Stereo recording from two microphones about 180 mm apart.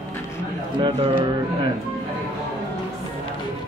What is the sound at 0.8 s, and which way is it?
Speech, 30° right (ahead or behind).